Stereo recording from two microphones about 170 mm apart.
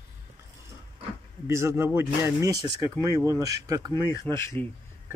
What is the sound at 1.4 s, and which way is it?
Speech, 15° right (ahead or behind).